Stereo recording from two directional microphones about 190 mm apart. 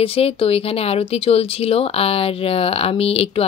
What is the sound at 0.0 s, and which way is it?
Speech, 30° left (ahead or behind).